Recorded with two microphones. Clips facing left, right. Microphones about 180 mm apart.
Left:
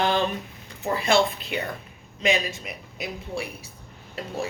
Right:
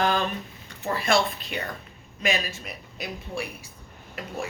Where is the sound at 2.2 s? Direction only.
20° left (ahead or behind).